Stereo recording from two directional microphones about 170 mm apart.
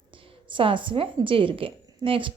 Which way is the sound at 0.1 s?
30° right (ahead or behind).